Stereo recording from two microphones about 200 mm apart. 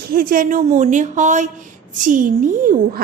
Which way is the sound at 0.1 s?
45° right (ahead or behind).